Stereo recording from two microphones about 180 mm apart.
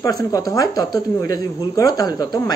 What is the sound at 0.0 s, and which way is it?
Speech, 20° left (ahead or behind).